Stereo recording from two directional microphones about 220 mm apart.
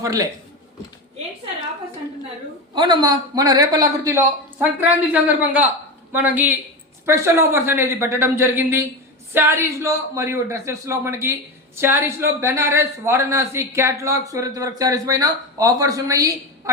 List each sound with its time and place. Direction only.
0.0 s a woman's voice: 15° right (ahead or behind)
2.7 s a woman's voice: 20° right (ahead or behind)